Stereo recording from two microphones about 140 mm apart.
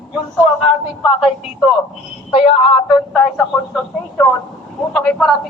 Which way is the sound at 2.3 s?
40° left (ahead or behind).